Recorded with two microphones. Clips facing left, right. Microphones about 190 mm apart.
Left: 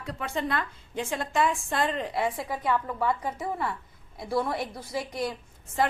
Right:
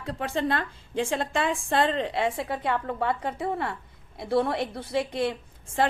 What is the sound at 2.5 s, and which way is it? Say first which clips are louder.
A woman's voice: even; 65° right (ahead or behind).